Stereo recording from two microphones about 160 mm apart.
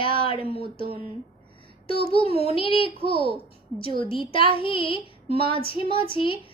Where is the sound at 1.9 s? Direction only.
35° left (ahead or behind).